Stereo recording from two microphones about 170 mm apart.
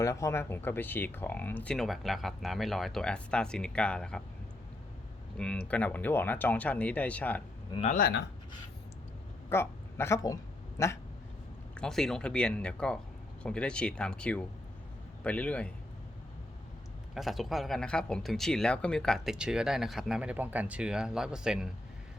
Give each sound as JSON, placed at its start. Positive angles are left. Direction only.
{"t": 0.0, "sound": "speech", "side_deg": 15}
{"t": 5.4, "sound": "speech", "side_deg": 5}
{"t": 7.9, "sound": "speech", "side_deg": 60}
{"t": 9.5, "sound": "a woman's voice", "side_deg": 15}
{"t": 11.8, "sound": "speech", "side_deg": 0}
{"t": 17.2, "sound": "speech", "side_deg": 0}